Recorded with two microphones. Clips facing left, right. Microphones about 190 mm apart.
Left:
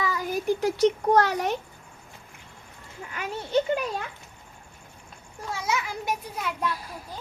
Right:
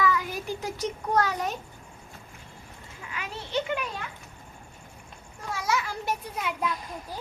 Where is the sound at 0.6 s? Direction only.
70° left (ahead or behind).